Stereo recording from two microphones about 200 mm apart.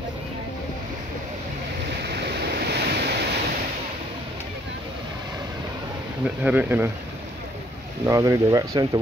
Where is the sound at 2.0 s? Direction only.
55° right (ahead or behind).